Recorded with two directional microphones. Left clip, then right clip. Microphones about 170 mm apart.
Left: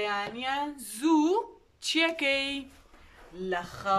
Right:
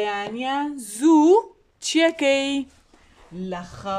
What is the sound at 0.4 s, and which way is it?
A woman's voice, 40° right (ahead or behind).